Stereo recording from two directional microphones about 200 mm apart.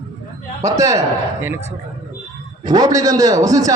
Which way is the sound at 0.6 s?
15° right (ahead or behind).